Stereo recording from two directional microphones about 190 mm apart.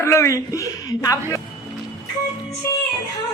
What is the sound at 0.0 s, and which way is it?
A woman's voice, 15° left (ahead or behind).